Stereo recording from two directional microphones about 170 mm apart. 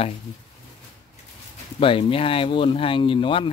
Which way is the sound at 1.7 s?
30° left (ahead or behind).